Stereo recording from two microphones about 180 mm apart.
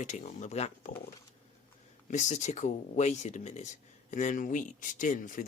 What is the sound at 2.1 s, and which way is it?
Speech, 40° left (ahead or behind).